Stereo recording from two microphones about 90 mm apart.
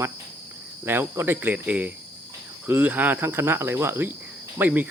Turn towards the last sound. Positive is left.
turn(degrees=-20)  # may be behind; listen again after turning